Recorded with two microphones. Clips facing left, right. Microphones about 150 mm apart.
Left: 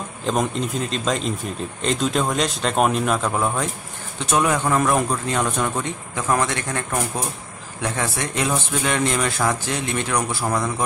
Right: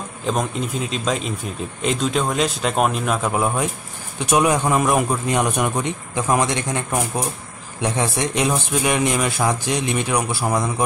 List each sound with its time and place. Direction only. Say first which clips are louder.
0.3 s a man's voice: left 1 dB; 5° right (ahead or behind)